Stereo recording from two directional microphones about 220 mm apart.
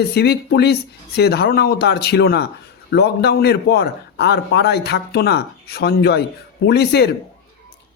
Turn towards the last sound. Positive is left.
turn(degrees=50)  # may be behind; listen again after turning